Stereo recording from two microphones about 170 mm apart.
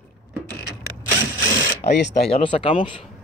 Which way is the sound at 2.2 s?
35° left (ahead or behind).